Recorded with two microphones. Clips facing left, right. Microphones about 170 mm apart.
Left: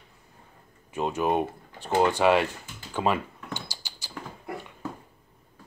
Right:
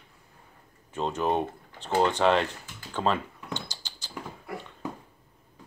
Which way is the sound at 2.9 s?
10° left (ahead or behind).